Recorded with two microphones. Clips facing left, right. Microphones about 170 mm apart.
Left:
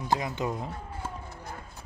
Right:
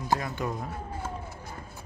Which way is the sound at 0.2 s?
15° left (ahead or behind).